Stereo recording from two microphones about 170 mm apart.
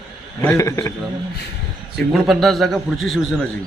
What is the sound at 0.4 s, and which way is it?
Speech, 20° left (ahead or behind).